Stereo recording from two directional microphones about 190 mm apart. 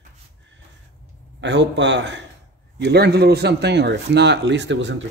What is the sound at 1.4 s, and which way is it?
A man's voice, 65° right (ahead or behind).